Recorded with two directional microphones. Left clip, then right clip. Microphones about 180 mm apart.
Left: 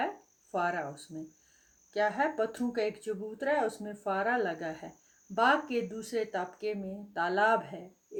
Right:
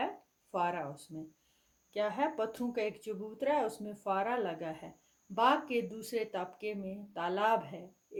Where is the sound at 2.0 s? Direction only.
30° right (ahead or behind).